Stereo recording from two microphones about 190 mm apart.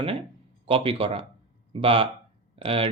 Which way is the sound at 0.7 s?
30° right (ahead or behind).